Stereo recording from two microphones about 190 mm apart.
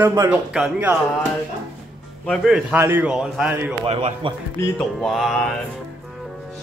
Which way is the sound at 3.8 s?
30° right (ahead or behind).